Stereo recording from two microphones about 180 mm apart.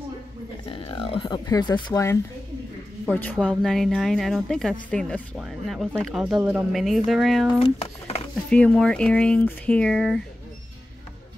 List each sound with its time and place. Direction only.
0.7 s speech: 30° left (ahead or behind)
3.1 s a woman's voice: 10° left (ahead or behind)
7.5 s speech: 35° left (ahead or behind)
8.5 s a woman's voice: 5° left (ahead or behind)